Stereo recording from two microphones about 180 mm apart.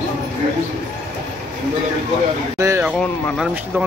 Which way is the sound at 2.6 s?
15° right (ahead or behind).